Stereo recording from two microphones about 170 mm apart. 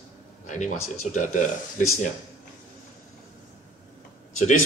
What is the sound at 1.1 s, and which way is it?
Speech, 45° left (ahead or behind).